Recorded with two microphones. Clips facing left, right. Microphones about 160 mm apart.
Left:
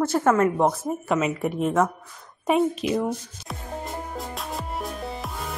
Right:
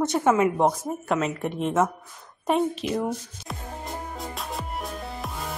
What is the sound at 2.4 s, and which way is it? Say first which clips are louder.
Music: left 2 dB; 5° left (ahead or behind).